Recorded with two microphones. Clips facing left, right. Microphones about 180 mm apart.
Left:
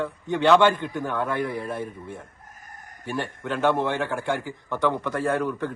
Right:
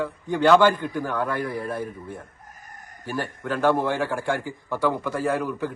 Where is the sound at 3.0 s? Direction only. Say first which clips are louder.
Right 1 dB; 5° right (ahead or behind).